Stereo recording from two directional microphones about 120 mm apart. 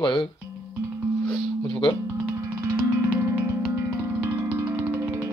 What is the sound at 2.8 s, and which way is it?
Music, 25° right (ahead or behind).